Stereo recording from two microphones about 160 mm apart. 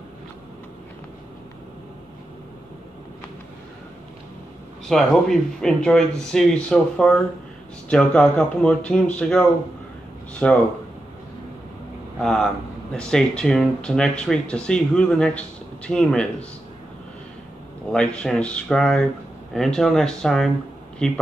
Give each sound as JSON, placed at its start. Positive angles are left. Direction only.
{"t": 4.8, "sound": "speech", "side_deg": 0}
{"t": 12.2, "sound": "speech", "side_deg": 5}
{"t": 17.9, "sound": "speech", "side_deg": 5}